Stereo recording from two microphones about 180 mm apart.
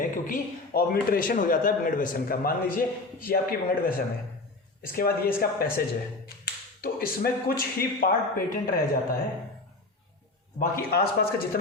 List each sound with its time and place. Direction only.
0.0 s a man's voice: 50° left (ahead or behind)
6.8 s a man's voice: 55° left (ahead or behind)
10.6 s a man's voice: 55° left (ahead or behind)